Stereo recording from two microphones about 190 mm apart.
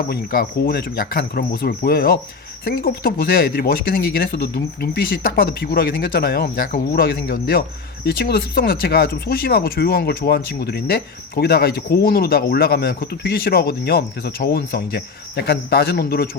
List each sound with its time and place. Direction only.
0.1 s speech: 50° left (ahead or behind)